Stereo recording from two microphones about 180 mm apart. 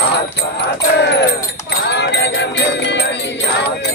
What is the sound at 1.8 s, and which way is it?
Music, 75° left (ahead or behind).